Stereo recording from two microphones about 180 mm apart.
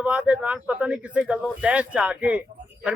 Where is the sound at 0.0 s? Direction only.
5° right (ahead or behind).